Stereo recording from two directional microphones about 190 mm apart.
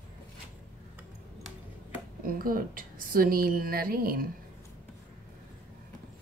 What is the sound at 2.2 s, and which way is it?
A woman's voice, 50° right (ahead or behind).